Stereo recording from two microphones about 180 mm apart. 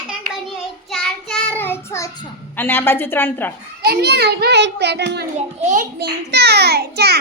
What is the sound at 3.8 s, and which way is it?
A child's voice, 60° right (ahead or behind).